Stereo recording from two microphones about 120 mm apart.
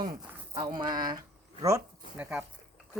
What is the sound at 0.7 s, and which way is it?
Speech, 35° right (ahead or behind).